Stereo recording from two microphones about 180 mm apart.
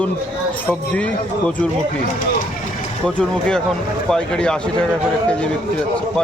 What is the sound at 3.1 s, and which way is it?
Speech, 5° left (ahead or behind).